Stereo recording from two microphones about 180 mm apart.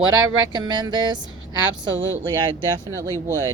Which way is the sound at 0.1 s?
25° right (ahead or behind).